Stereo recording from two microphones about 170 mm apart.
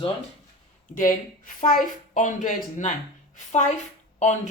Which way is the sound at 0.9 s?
50° left (ahead or behind).